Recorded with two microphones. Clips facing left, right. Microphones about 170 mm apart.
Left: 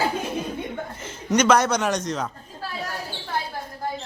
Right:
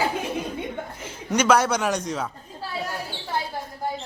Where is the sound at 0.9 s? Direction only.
10° right (ahead or behind).